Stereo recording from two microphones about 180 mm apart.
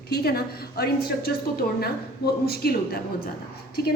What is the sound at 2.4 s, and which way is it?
Speech, 60° left (ahead or behind).